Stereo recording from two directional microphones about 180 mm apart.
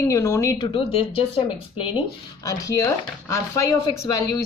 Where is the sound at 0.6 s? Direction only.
30° left (ahead or behind).